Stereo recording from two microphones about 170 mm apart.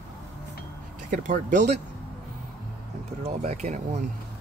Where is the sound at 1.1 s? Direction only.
45° right (ahead or behind).